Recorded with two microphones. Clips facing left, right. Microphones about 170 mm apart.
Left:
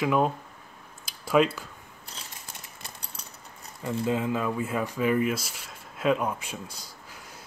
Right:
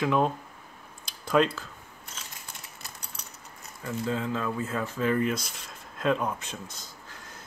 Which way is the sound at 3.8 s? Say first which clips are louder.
Left 3 dB; 15° left (ahead or behind).